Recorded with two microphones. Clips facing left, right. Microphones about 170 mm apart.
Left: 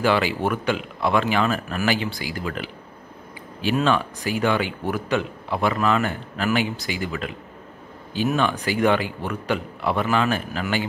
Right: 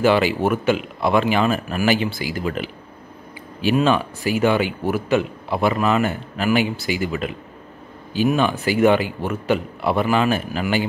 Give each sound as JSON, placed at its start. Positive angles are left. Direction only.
{"t": 0.0, "sound": "a man's voice", "side_deg": -20}